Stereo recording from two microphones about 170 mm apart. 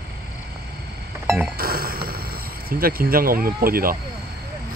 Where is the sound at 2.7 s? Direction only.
60° right (ahead or behind).